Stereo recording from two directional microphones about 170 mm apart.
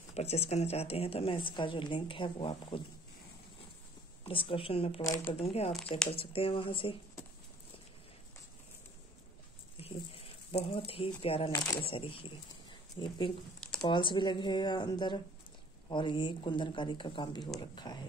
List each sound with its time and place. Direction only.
0.1 s a woman's voice: 40° left (ahead or behind)
4.2 s a woman's voice: 30° left (ahead or behind)
5.0 s speech: 15° left (ahead or behind)
5.3 s a woman's voice: 35° left (ahead or behind)
9.8 s speech: 35° left (ahead or behind)
11.5 s speech: 15° left (ahead or behind)
11.8 s a woman's voice: 30° left (ahead or behind)